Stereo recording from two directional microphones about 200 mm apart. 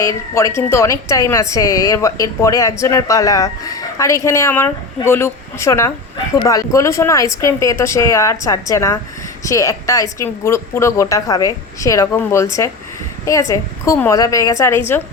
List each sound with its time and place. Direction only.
0.0 s a woman's voice: 15° left (ahead or behind)